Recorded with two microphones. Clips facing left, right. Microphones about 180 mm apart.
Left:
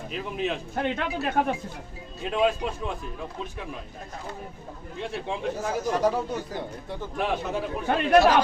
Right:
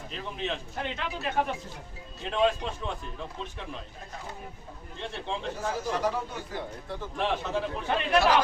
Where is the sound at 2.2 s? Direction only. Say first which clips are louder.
Left 2 dB; 5° left (ahead or behind).